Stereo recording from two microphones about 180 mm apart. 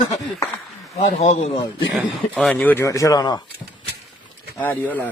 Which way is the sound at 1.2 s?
40° left (ahead or behind).